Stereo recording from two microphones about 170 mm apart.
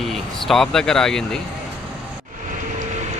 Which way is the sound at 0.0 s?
Centre (ahead or behind).